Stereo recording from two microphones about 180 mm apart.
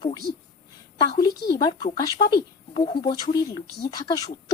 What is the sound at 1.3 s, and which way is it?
Speech, 60° left (ahead or behind).